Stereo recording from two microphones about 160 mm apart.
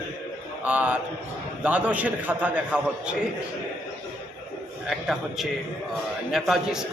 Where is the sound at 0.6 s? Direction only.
10° right (ahead or behind).